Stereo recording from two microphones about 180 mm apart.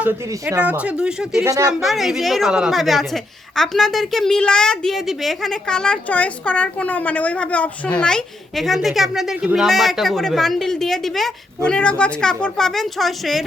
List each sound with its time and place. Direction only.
0.6 s speech: 10° right (ahead or behind)
1.5 s speech: 15° right (ahead or behind)
1.8 s a woman's voice: centre (ahead or behind)